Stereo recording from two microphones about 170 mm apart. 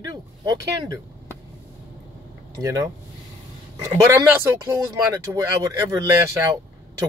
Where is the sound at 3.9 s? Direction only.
15° right (ahead or behind).